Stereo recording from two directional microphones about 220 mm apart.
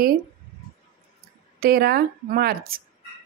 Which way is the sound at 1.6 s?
45° right (ahead or behind).